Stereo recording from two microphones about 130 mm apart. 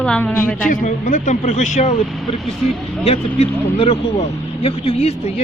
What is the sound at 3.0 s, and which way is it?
Speech, 55° left (ahead or behind).